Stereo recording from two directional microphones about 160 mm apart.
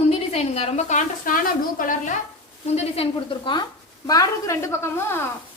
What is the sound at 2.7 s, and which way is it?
A woman's voice, 40° left (ahead or behind).